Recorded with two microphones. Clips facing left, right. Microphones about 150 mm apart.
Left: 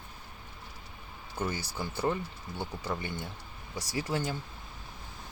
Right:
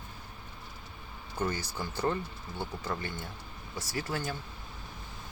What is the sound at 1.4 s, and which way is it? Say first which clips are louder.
Speech: right 1 dB; 10° left (ahead or behind).